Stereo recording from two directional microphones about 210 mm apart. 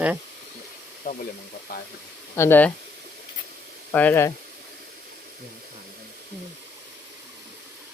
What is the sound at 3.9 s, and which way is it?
Speech, 10° left (ahead or behind).